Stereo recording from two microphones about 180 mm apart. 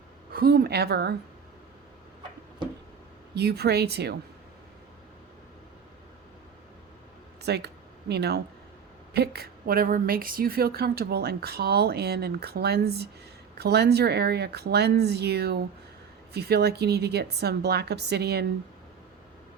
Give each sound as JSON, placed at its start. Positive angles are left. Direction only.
{"t": 0.3, "sound": "a woman's voice", "side_deg": -55}
{"t": 3.3, "sound": "a woman's voice", "side_deg": -65}
{"t": 7.4, "sound": "a woman's voice", "side_deg": -65}